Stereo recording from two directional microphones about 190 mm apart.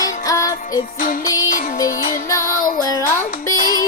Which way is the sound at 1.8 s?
20° left (ahead or behind).